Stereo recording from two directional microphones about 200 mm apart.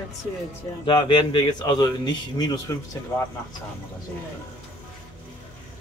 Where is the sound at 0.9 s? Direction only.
25° left (ahead or behind).